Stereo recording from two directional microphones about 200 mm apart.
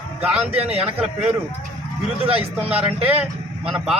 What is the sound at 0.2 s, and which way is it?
Speech, 5° right (ahead or behind).